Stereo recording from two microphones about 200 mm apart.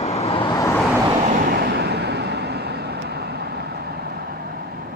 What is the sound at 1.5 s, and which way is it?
Vehicle, 55° right (ahead or behind).